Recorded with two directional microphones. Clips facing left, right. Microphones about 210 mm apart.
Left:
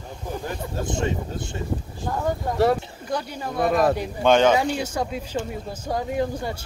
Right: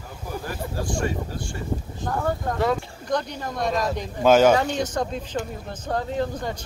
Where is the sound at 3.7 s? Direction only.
60° left (ahead or behind).